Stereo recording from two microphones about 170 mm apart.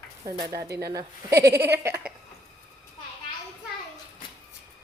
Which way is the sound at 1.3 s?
70° right (ahead or behind).